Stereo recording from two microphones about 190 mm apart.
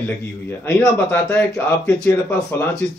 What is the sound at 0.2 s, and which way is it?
Speech, 10° left (ahead or behind).